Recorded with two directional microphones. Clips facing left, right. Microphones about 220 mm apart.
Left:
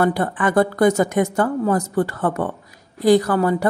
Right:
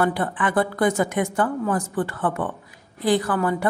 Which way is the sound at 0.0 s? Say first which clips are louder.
Left 4 dB; 40° left (ahead or behind).